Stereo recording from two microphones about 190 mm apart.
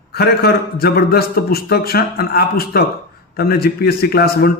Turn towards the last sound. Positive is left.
turn(degrees=55)  # may be behind; listen again after turning